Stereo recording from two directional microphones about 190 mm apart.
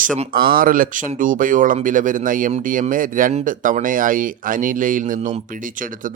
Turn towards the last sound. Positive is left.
turn(degrees=-45)  # may be behind; listen again after turning